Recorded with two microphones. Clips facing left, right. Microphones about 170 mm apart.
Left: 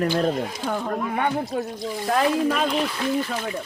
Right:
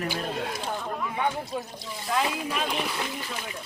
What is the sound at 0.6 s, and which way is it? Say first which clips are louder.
Speech: left 6 dB; 65° left (ahead or behind).